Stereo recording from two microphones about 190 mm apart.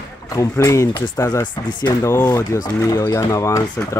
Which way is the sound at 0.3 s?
15° left (ahead or behind).